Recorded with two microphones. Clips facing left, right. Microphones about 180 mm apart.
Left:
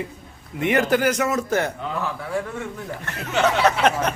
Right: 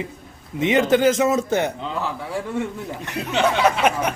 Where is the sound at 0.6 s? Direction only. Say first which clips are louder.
Right 3 dB; 20° right (ahead or behind).